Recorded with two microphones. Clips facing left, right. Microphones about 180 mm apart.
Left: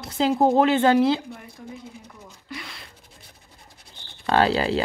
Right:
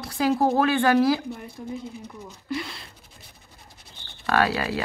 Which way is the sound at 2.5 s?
30° right (ahead or behind).